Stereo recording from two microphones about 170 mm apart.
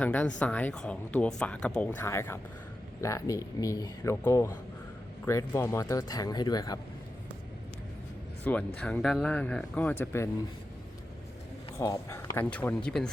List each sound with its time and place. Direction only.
0.0 s speech: 10° left (ahead or behind)
8.4 s speech: 10° left (ahead or behind)
11.8 s speech: 15° left (ahead or behind)